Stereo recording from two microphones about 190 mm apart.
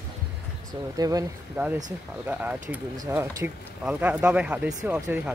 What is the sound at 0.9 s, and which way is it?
Speech, 20° right (ahead or behind).